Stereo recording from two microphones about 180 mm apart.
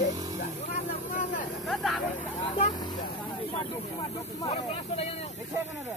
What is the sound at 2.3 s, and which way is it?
Vehicle, 40° left (ahead or behind).